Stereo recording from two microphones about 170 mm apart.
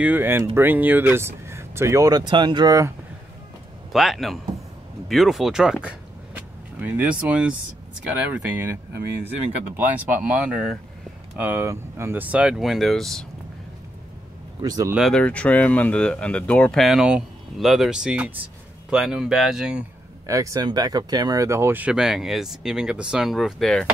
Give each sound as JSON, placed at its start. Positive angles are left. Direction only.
{"t": 0.0, "sound": "speech", "side_deg": -10}
{"t": 3.9, "sound": "speech", "side_deg": 0}
{"t": 14.6, "sound": "speech", "side_deg": -20}
{"t": 15.0, "sound": "speech", "side_deg": 5}
{"t": 20.2, "sound": "speech", "side_deg": -20}